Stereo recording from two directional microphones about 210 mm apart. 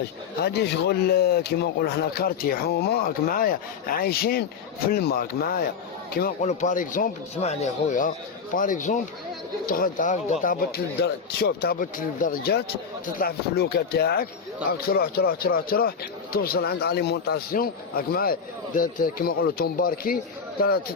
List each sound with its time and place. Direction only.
0.4 s speech: 50° left (ahead or behind)